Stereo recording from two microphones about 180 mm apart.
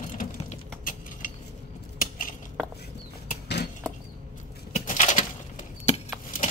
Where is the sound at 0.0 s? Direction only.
45° left (ahead or behind).